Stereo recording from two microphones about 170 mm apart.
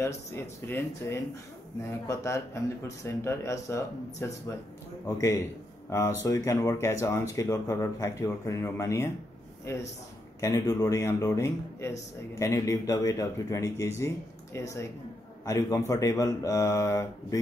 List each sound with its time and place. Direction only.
0.0 s speech: 15° left (ahead or behind)
10.4 s speech: 15° left (ahead or behind)